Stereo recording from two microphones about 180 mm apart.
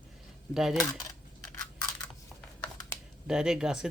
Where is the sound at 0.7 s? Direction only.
20° left (ahead or behind).